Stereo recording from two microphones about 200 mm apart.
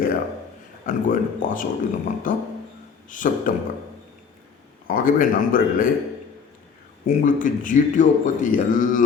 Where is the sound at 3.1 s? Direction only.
40° left (ahead or behind).